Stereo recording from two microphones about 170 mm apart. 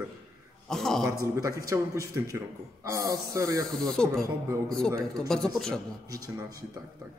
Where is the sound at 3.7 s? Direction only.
5° left (ahead or behind).